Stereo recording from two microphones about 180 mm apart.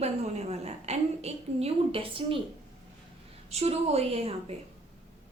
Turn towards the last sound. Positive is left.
turn(degrees=-35)  # may be behind; listen again after turning